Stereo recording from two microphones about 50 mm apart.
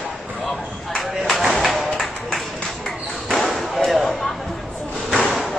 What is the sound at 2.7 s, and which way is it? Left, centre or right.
Basketball bounce, centre.